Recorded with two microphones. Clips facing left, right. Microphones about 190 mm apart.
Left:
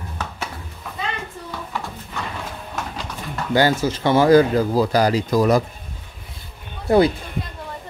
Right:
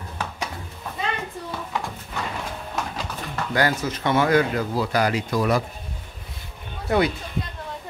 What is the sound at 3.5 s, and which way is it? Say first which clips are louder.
Speech: left 5 dB; 30° left (ahead or behind).